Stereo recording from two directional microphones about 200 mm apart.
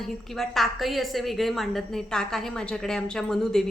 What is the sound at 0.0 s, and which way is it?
A woman's voice, centre (ahead or behind).